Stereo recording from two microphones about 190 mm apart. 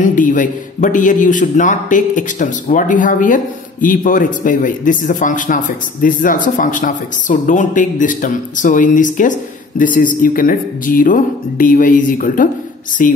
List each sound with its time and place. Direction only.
0.0 s speech: 45° left (ahead or behind)